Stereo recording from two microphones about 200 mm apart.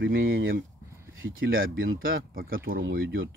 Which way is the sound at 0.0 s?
75° right (ahead or behind).